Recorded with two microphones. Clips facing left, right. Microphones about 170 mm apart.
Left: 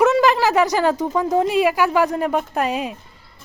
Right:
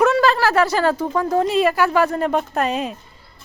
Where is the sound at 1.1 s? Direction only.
15° left (ahead or behind).